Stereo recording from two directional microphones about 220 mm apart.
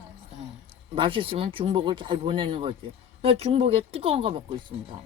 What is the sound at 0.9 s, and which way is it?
Speech, 25° right (ahead or behind).